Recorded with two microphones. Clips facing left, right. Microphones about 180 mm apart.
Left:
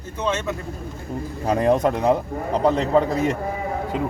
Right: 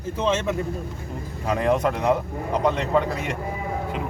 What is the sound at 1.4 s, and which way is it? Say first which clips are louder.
A man's voice: left 3 dB; 35° left (ahead or behind).